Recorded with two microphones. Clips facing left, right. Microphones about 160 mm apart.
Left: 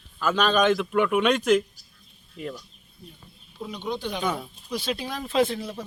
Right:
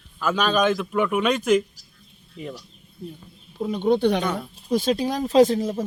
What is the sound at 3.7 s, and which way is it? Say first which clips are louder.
Speech: right 11 dB; 55° right (ahead or behind).